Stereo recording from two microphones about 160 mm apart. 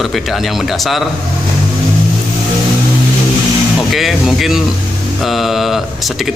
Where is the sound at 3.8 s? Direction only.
Centre (ahead or behind).